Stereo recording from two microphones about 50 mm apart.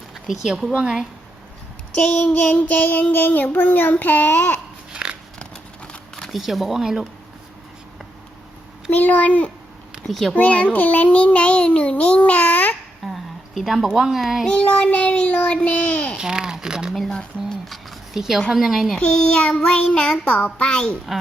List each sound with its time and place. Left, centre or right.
0.1 s speech: centre
2.0 s child singing: centre; by 4.6 s left
5.4 s crumpling: centre
6.3 s speech: centre
8.9 s child singing: left
10.1 s speech: centre
10.3 s a child's voice: left
13.1 s speech: centre
14.4 s a child's voice: left
16.1 s a sound: centre
16.9 s speech: centre
18.1 s speech: centre
18.9 s a child's voice: centre